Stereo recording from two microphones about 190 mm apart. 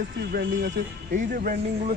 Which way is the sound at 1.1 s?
45° right (ahead or behind).